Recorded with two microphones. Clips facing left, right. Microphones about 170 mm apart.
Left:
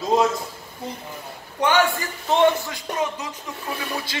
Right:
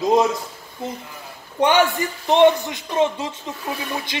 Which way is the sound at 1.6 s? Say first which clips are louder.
Right 3 dB; 20° right (ahead or behind).